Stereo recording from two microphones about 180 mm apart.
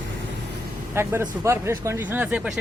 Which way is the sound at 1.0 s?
15° right (ahead or behind).